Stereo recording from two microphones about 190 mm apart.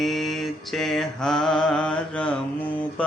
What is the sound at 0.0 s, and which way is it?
Mantra, centre (ahead or behind).